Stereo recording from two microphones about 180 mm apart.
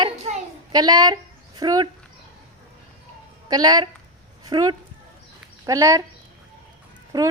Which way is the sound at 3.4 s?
20° right (ahead or behind).